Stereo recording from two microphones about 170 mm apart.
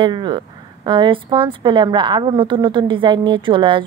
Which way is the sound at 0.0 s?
25° right (ahead or behind).